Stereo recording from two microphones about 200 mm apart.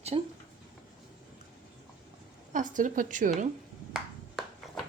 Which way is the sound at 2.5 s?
40° right (ahead or behind).